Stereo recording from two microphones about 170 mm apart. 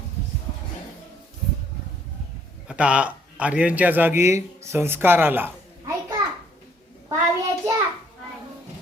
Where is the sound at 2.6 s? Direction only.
5° right (ahead or behind).